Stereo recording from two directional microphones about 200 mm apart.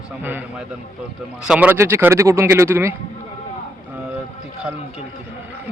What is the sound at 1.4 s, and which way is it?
Speech, 5° right (ahead or behind).